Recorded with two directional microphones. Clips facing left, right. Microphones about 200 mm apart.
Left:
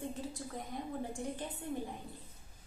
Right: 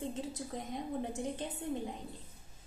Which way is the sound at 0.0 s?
20° right (ahead or behind).